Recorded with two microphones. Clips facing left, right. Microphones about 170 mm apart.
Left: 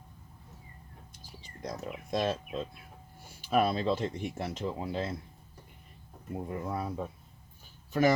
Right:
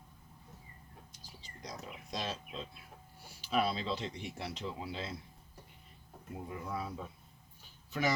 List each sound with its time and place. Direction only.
1.4 s a sound: 50° left (ahead or behind)
3.5 s speech: 50° left (ahead or behind)
6.5 s speech: 45° left (ahead or behind)